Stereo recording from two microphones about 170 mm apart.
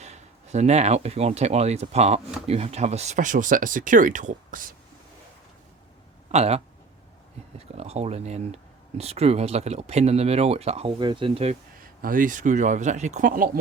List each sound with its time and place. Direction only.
0.0 s speech: 40° right (ahead or behind)
6.3 s speech: 40° right (ahead or behind)
7.8 s speech: 40° right (ahead or behind)
11.8 s speech: 55° right (ahead or behind)